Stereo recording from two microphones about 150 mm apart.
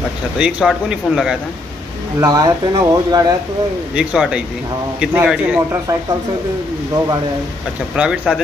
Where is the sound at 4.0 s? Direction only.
5° right (ahead or behind).